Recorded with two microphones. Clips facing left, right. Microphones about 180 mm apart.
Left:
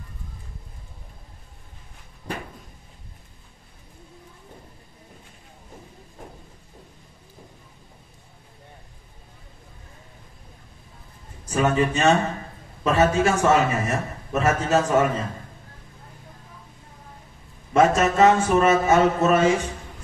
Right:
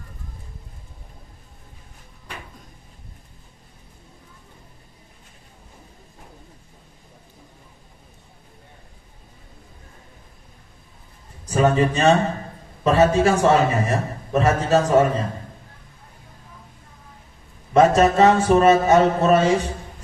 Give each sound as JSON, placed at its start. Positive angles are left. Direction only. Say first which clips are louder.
{"t": 11.4, "sound": "a man's voice", "louder": "right 3 dB", "side_deg": -35}
{"t": 17.7, "sound": "a man's voice", "louder": "right 3 dB", "side_deg": -35}